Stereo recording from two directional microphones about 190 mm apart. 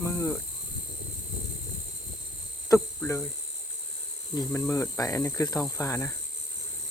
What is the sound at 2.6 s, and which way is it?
Speech, 15° left (ahead or behind).